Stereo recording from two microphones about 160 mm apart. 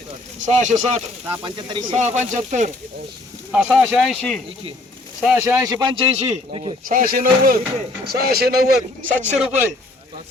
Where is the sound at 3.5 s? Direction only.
5° right (ahead or behind).